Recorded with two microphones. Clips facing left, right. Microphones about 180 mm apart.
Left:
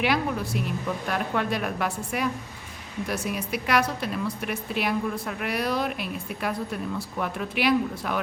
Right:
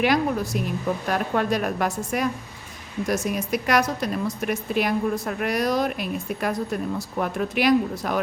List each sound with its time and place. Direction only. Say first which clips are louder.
0.0 s a woman's voice: right 4 dB; 45° right (ahead or behind)